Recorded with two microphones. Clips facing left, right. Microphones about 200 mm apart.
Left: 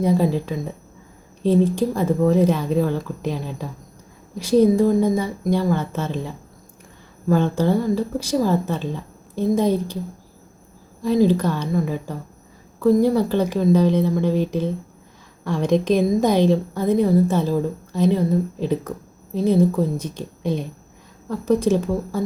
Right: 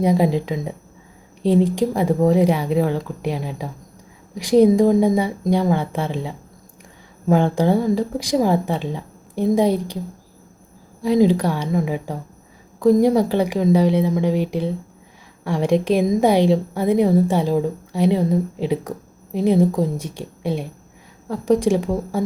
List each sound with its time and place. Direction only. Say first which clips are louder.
0.0 s a woman's voice: right 1 dB; 15° right (ahead or behind)
7.3 s a woman's voice: right 2 dB; 15° right (ahead or behind)
11.0 s a woman's voice: right 1 dB; 15° right (ahead or behind)